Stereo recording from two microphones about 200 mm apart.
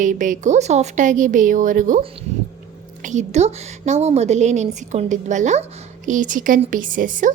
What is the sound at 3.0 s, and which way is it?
A woman's voice, 35° right (ahead or behind).